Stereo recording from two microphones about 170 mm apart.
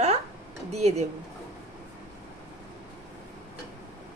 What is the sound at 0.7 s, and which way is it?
Speech, 40° right (ahead or behind).